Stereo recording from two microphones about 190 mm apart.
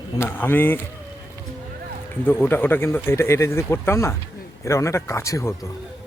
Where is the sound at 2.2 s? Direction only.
10° left (ahead or behind).